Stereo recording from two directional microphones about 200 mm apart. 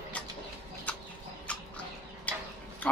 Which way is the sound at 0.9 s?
5° left (ahead or behind).